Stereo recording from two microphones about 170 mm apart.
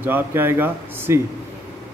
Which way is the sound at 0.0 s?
10° right (ahead or behind).